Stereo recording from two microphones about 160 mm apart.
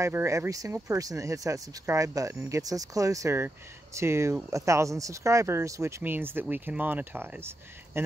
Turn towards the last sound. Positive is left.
turn(degrees=-15)  # may be behind; listen again after turning